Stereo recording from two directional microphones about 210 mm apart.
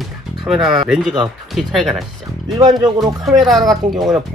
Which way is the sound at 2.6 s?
20° right (ahead or behind).